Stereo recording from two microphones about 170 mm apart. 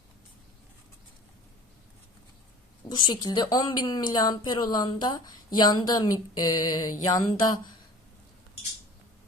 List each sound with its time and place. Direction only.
2.9 s a woman's voice: 25° left (ahead or behind)